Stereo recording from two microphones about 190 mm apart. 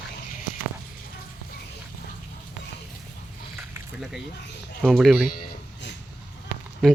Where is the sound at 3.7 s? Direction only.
5° right (ahead or behind).